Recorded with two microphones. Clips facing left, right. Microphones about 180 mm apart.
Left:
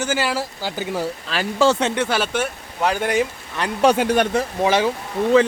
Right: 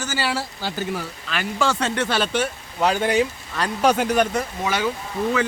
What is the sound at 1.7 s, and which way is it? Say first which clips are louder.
Speech: left 2 dB; 15° left (ahead or behind).